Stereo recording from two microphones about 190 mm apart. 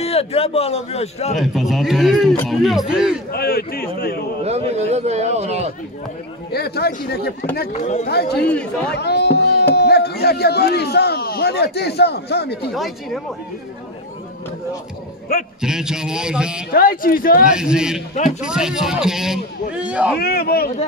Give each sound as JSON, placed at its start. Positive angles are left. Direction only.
{"t": 0.0, "sound": "a man's voice", "side_deg": 30}
{"t": 1.4, "sound": "a man's voice", "side_deg": 0}
{"t": 3.3, "sound": "a man's voice", "side_deg": 55}
{"t": 4.5, "sound": "a man's voice", "side_deg": -35}
{"t": 6.5, "sound": "speech", "side_deg": 55}
{"t": 7.7, "sound": "a man's voice", "side_deg": 35}
{"t": 8.1, "sound": "speech", "side_deg": 55}
{"t": 8.5, "sound": "a man's voice", "side_deg": 5}
{"t": 8.9, "sound": "speech", "side_deg": 60}
{"t": 12.7, "sound": "a man's voice", "side_deg": 0}
{"t": 15.6, "sound": "a man's voice", "side_deg": -5}
{"t": 16.7, "sound": "a man's voice", "side_deg": 50}
{"t": 17.5, "sound": "a man's voice", "side_deg": -5}
{"t": 20.2, "sound": "a man's voice", "side_deg": 55}